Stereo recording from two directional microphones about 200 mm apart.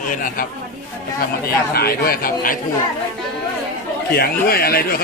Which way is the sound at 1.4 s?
50° left (ahead or behind).